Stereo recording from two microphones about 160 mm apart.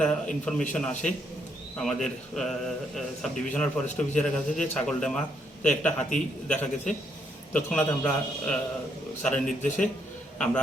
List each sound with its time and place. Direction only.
0.0 s a man's voice: 5° left (ahead or behind)
9.5 s a man's voice: 50° left (ahead or behind)
10.3 s a man's voice: 5° left (ahead or behind)